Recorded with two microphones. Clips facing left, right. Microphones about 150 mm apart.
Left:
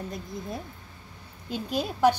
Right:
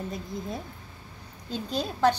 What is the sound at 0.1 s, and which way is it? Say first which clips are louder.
A woman's voice: right 1 dB; centre (ahead or behind).